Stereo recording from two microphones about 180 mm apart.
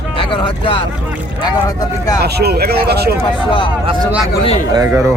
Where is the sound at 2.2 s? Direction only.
60° right (ahead or behind).